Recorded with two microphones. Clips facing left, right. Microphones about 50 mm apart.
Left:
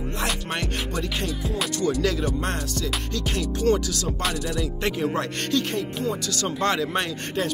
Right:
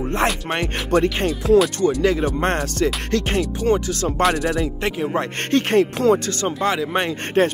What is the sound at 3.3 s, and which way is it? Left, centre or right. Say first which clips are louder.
Music: even; right.